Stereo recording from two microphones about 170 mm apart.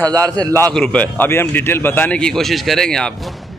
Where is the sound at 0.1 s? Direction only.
20° right (ahead or behind).